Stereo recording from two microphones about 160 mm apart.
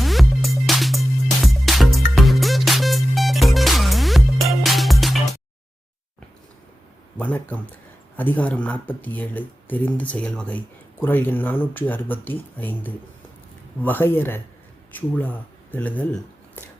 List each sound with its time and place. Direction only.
0.0 s music: centre (ahead or behind)
7.2 s speech: 10° left (ahead or behind)